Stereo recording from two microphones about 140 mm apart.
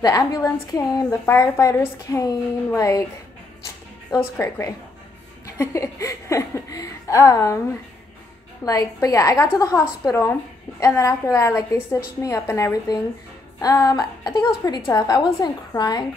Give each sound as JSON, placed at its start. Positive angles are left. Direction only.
{"t": 0.0, "sound": "a woman's voice", "side_deg": 25}
{"t": 4.1, "sound": "a woman's voice", "side_deg": 20}
{"t": 8.6, "sound": "a woman's voice", "side_deg": 25}